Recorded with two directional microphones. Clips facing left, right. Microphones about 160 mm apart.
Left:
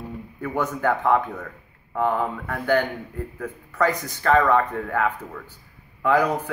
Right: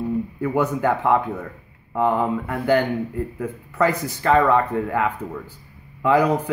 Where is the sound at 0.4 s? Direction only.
10° right (ahead or behind).